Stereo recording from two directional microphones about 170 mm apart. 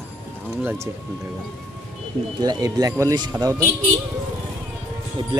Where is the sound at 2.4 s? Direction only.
25° right (ahead or behind).